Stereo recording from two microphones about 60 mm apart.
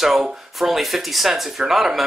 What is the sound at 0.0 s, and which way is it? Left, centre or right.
Speech, centre.